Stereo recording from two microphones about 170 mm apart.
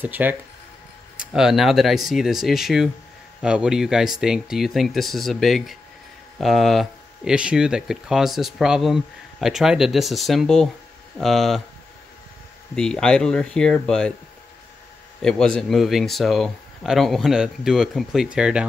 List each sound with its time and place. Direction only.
0.0 s speech: 10° right (ahead or behind)
12.7 s speech: 5° left (ahead or behind)
15.2 s speech: 5° left (ahead or behind)